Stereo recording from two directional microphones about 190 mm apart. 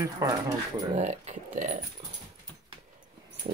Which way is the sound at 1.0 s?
35° right (ahead or behind).